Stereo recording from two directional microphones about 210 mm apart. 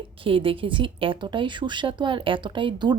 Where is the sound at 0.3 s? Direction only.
25° right (ahead or behind).